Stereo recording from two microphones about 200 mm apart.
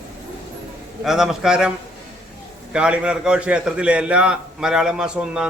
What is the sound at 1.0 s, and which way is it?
Speech, centre (ahead or behind).